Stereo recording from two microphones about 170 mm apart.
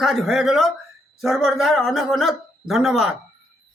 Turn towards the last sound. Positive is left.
turn(degrees=0)  # may be behind; listen again after turning